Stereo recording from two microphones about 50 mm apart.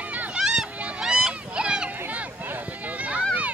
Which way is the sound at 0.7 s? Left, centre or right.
Right.